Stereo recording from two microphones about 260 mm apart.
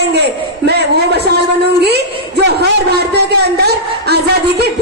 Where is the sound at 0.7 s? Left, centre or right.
Right.